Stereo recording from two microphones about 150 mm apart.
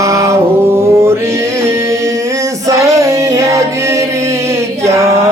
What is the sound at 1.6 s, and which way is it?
Music, 20° right (ahead or behind).